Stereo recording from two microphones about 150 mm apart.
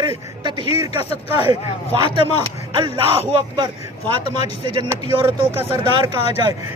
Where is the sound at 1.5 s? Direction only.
35° right (ahead or behind).